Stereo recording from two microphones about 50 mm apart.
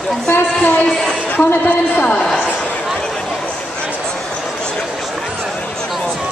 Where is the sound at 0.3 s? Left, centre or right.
Left.